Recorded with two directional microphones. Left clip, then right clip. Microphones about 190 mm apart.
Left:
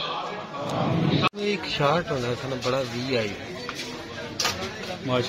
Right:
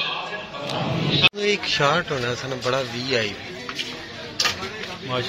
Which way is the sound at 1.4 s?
5° right (ahead or behind).